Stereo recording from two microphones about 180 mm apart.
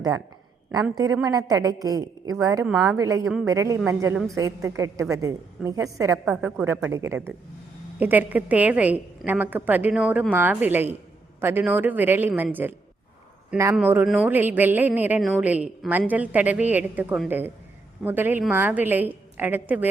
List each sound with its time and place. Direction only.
0.9 s a woman's voice: 20° right (ahead or behind)
2.6 s a woman's voice: 5° right (ahead or behind)
3.0 s a woman's voice: 20° right (ahead or behind)
13.7 s a woman's voice: 10° right (ahead or behind)